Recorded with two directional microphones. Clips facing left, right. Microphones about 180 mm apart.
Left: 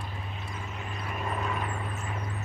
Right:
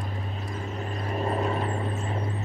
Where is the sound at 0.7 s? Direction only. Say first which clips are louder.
Right 7 dB; 35° right (ahead or behind).